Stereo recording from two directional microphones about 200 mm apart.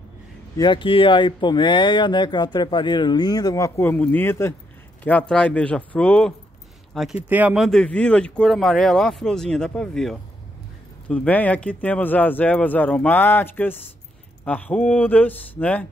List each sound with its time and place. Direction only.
0.6 s speech: 25° left (ahead or behind); by 15.9 s 10° left (ahead or behind)